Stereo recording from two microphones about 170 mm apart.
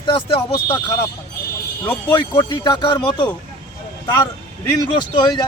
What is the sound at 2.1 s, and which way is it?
Speech, 25° left (ahead or behind).